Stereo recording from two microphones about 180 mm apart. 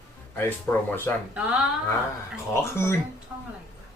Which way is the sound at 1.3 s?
5° right (ahead or behind).